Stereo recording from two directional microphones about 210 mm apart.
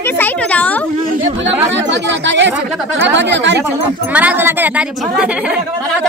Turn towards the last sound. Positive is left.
turn(degrees=-5)  # may be behind; listen again after turning